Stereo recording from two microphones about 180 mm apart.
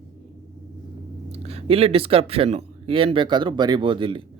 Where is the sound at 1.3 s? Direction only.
35° right (ahead or behind).